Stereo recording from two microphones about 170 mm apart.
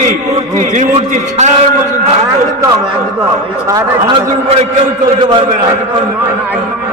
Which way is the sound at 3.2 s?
20° right (ahead or behind).